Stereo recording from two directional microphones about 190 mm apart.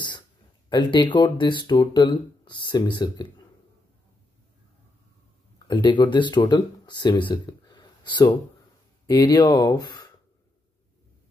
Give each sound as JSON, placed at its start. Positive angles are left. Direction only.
{"t": 0.7, "sound": "speech", "side_deg": 25}
{"t": 5.7, "sound": "speech", "side_deg": 25}